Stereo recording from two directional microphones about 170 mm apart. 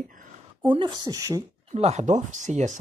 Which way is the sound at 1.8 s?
40° right (ahead or behind).